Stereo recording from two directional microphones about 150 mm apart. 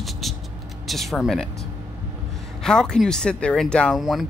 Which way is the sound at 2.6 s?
5° left (ahead or behind).